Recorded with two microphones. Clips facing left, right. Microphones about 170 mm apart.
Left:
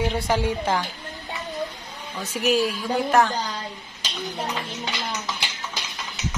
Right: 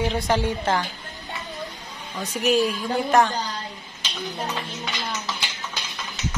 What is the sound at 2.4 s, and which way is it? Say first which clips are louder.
Speech: right 1 dB; 5° left (ahead or behind).